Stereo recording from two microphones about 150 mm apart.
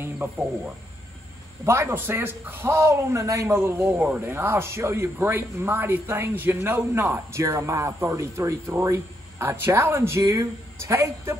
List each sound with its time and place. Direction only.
0.0 s a man's voice: 10° right (ahead or behind)